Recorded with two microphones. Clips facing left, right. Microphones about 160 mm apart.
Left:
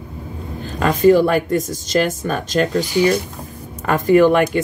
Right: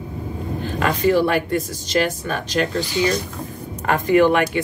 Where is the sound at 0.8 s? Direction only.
45° left (ahead or behind).